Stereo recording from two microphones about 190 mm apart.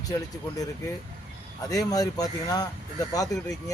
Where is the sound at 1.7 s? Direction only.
20° left (ahead or behind).